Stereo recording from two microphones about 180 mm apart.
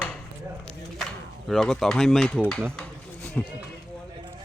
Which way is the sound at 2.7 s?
5° left (ahead or behind).